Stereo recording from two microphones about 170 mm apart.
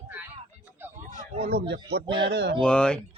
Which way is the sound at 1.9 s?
80° right.